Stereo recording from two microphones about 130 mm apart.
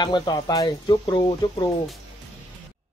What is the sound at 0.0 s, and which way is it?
Speech, 35° left (ahead or behind).